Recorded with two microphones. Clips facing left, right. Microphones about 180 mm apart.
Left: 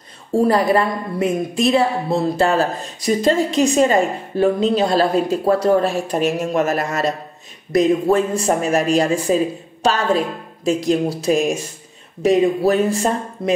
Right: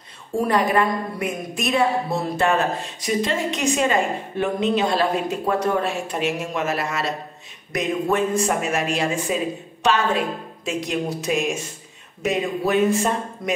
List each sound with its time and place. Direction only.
0.3 s a woman's voice: 35° left (ahead or behind)
7.7 s a woman's voice: 35° left (ahead or behind)